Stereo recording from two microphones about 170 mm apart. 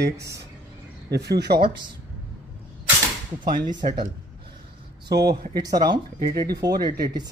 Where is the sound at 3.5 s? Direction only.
55° right (ahead or behind).